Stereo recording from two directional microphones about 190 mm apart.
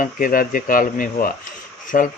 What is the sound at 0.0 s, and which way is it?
Speech, 45° left (ahead or behind).